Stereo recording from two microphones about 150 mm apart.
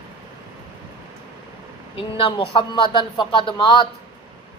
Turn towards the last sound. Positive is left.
turn(degrees=30)  # may be behind; listen again after turning